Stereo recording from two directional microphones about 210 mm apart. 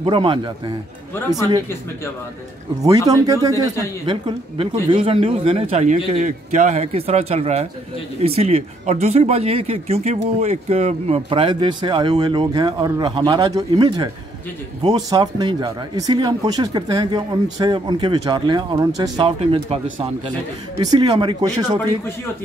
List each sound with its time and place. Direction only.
0.0 s speech: 25° right (ahead or behind)
3.1 s speech: 15° right (ahead or behind)